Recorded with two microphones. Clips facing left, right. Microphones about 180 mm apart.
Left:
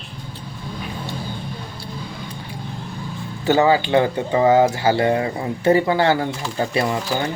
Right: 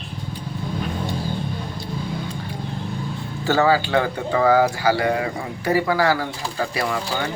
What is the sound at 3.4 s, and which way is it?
Speech, 20° left (ahead or behind).